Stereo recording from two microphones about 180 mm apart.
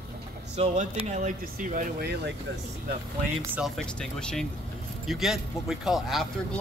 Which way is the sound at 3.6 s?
Centre (ahead or behind).